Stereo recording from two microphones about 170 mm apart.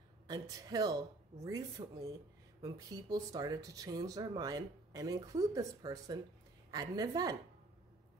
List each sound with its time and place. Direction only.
0.3 s speech: 20° right (ahead or behind)